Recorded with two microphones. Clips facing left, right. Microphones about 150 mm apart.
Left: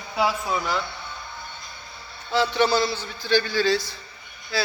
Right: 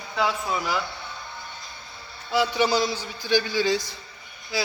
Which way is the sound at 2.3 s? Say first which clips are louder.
Left 1 dB; 10° right (ahead or behind).